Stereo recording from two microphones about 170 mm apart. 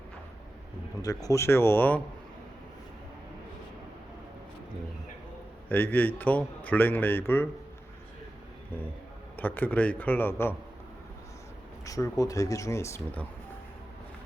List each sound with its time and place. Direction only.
1.0 s a man's voice: 20° left (ahead or behind)
5.6 s a man's voice: 10° left (ahead or behind)
9.3 s a man's voice: 10° left (ahead or behind)
11.9 s speech: 20° left (ahead or behind)